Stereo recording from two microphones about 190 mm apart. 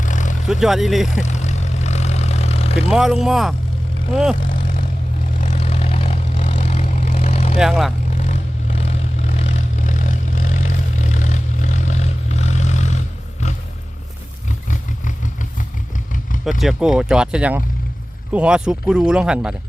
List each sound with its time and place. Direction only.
0.0 s vehicle: 40° left (ahead or behind)
0.4 s speech: centre (ahead or behind)
1.2 s vehicle: 40° left (ahead or behind)
2.9 s speech: centre (ahead or behind)
4.4 s vehicle: 45° left (ahead or behind)
7.6 s speech: centre (ahead or behind)
8.1 s vehicle: 35° left (ahead or behind)
14.7 s vehicle: 40° left (ahead or behind)
16.5 s speech: centre (ahead or behind)